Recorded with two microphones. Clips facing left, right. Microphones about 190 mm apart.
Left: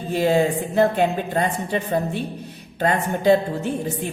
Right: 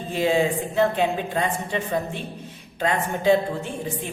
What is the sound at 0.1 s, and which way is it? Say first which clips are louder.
A woman's voice: left 3 dB; 40° left (ahead or behind).